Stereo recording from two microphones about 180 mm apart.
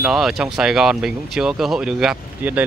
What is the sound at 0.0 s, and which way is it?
Speech, centre (ahead or behind).